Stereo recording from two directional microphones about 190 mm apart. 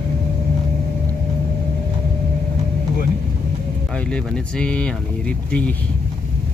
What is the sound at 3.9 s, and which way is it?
Speech, 5° left (ahead or behind).